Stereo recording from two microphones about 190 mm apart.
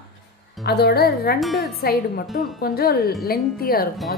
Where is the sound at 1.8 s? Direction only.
50° left (ahead or behind).